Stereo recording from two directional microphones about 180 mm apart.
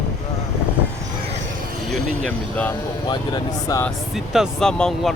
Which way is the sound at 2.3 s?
10° left (ahead or behind).